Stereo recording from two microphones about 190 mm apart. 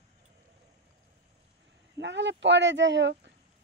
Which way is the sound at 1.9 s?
70° right (ahead or behind).